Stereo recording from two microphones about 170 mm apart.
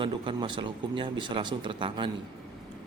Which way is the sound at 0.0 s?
30° right (ahead or behind).